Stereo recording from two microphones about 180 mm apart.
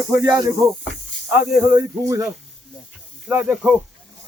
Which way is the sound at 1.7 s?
20° right (ahead or behind).